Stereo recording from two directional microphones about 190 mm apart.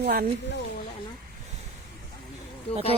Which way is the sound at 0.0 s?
55° right (ahead or behind).